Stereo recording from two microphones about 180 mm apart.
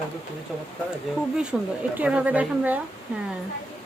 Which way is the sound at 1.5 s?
5° right (ahead or behind).